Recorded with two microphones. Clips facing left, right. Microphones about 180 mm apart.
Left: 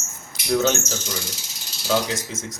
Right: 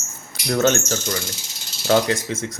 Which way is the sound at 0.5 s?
60° right (ahead or behind).